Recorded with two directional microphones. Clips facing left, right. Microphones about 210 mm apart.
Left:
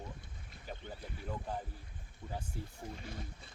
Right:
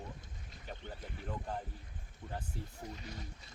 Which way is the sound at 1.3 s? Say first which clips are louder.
Even; 5° left (ahead or behind).